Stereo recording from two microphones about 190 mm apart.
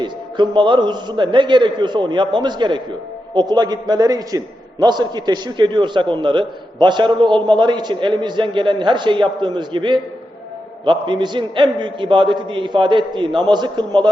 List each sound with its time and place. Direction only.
0.0 s a man's voice: 25° right (ahead or behind)